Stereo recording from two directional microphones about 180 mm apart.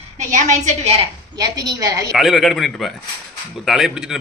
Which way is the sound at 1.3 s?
20° right (ahead or behind).